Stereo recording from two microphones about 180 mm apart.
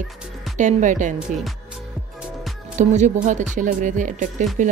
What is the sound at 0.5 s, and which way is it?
Speech, 45° right (ahead or behind).